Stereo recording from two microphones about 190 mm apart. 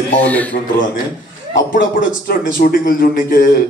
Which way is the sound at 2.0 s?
50° left (ahead or behind).